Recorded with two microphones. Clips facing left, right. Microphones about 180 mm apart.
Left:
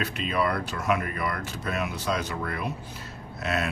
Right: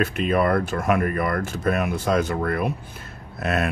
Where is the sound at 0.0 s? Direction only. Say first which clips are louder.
Right 6 dB; 50° right (ahead or behind).